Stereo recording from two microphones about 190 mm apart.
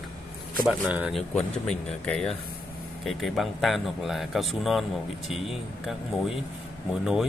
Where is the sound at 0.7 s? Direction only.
5° right (ahead or behind).